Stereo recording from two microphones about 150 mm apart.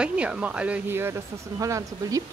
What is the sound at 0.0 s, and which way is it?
A woman's voice, 5° right (ahead or behind).